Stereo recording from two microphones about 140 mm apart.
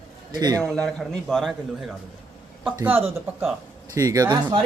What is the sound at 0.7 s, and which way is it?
Speech, 5° left (ahead or behind).